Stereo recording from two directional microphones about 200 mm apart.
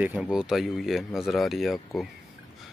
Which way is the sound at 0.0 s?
5° right (ahead or behind).